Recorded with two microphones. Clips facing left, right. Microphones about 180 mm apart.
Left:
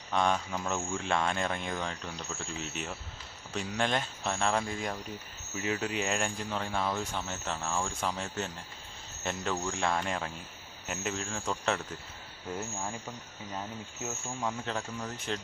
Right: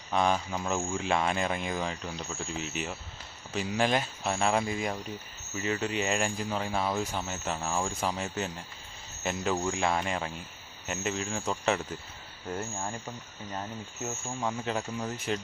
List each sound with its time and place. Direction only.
0.1 s speech: 5° right (ahead or behind)
13.5 s speech: centre (ahead or behind)